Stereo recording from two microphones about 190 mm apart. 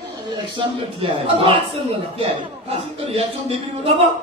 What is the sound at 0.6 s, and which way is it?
Speech, 25° right (ahead or behind).